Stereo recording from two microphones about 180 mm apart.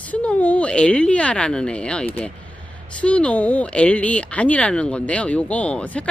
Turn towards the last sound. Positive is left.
turn(degrees=5)  # may be behind; listen again after turning